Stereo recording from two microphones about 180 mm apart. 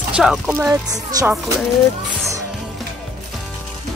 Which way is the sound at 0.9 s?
20° right (ahead or behind).